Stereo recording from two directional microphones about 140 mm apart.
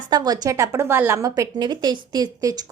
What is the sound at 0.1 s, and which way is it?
A woman's voice, 30° right (ahead or behind).